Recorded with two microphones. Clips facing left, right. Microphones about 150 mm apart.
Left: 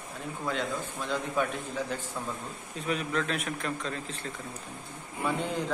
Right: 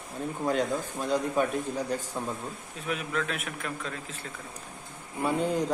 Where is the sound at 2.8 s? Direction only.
5° right (ahead or behind).